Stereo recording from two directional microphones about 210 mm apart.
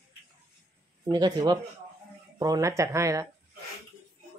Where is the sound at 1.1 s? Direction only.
20° right (ahead or behind).